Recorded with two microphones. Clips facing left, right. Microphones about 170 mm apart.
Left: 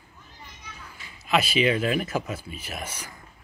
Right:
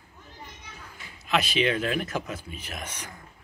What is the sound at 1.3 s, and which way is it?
Speech, 5° left (ahead or behind).